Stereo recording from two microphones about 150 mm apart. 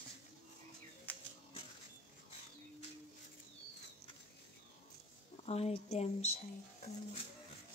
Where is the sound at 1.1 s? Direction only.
10° left (ahead or behind).